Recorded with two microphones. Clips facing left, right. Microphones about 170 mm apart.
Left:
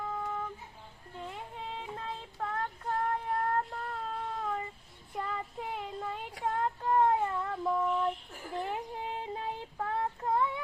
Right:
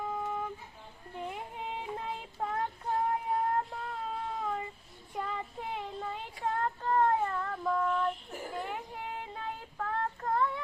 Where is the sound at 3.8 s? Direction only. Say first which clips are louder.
Even; 5° right (ahead or behind).